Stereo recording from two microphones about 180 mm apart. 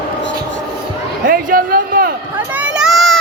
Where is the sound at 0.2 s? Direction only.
90° left.